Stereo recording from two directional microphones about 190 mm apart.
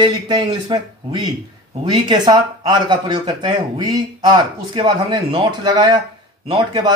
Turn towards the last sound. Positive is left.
turn(degrees=-20)  # may be behind; listen again after turning